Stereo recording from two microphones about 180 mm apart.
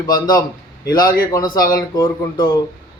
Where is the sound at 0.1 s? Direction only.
20° left (ahead or behind).